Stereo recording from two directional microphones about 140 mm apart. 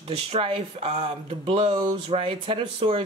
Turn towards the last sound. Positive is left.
turn(degrees=-40)  # may be behind; listen again after turning